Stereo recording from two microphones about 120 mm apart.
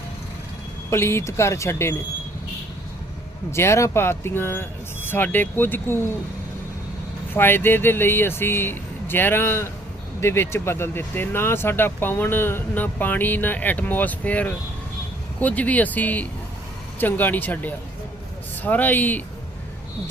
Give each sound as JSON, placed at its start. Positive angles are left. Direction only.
{"t": 0.9, "sound": "speech", "side_deg": 20}
{"t": 3.5, "sound": "speech", "side_deg": 20}
{"t": 7.3, "sound": "speech", "side_deg": 15}